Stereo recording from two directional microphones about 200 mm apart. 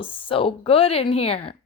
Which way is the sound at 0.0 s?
25° left (ahead or behind).